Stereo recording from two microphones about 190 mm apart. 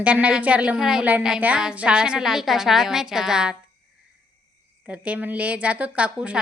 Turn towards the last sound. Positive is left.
turn(degrees=-5)  # may be behind; listen again after turning